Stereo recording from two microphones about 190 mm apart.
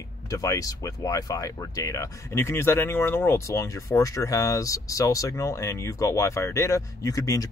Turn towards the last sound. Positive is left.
turn(degrees=20)  # may be behind; listen again after turning